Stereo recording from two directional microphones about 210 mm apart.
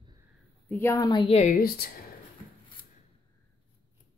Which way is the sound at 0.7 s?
10° left (ahead or behind).